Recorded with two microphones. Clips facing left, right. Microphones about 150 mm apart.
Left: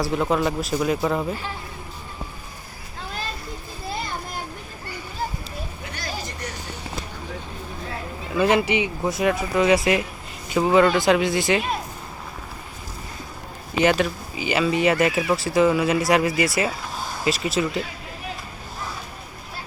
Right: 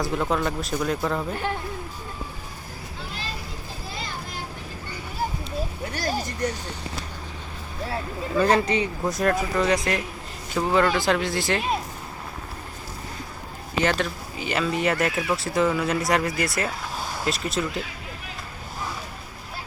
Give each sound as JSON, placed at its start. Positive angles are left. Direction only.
{"t": 0.0, "sound": "speech", "side_deg": 5}
{"t": 5.9, "sound": "vehicle", "side_deg": -45}
{"t": 8.4, "sound": "speech", "side_deg": 10}
{"t": 13.8, "sound": "speech", "side_deg": 5}